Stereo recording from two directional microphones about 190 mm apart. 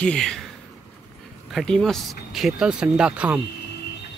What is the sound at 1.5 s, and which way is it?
Speech, centre (ahead or behind).